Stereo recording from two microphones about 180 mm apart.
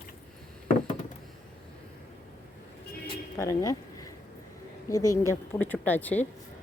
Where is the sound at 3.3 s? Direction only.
20° left (ahead or behind).